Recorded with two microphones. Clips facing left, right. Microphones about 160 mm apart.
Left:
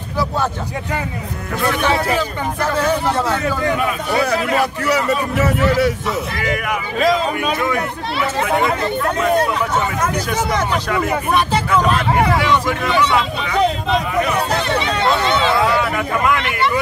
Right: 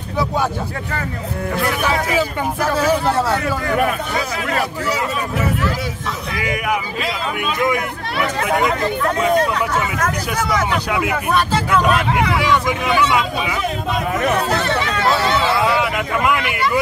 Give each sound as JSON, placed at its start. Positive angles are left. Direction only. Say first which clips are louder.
{"t": 1.7, "sound": "speech", "louder": "left 5 dB", "side_deg": -5}
{"t": 6.4, "sound": "speech", "louder": "right 3 dB", "side_deg": -10}
{"t": 7.0, "sound": "speech", "louder": "left 7 dB", "side_deg": 40}
{"t": 10.9, "sound": "speech", "louder": "left 1 dB", "side_deg": -10}
{"t": 12.6, "sound": "speech", "louder": "even", "side_deg": -10}
{"t": 14.6, "sound": "speech", "louder": "left 1 dB", "side_deg": 20}
{"t": 15.8, "sound": "speech", "louder": "left 1 dB", "side_deg": -5}